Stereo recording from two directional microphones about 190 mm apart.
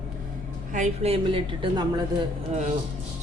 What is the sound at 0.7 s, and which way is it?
Speech, 35° right (ahead or behind).